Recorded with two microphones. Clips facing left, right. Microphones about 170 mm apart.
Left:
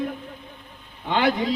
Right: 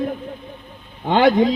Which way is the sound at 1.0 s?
45° right (ahead or behind).